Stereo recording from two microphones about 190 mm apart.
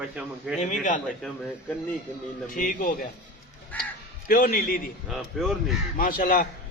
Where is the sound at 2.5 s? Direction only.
45° left (ahead or behind).